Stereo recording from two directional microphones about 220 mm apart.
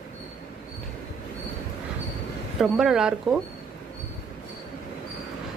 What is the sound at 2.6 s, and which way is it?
Speech, centre (ahead or behind).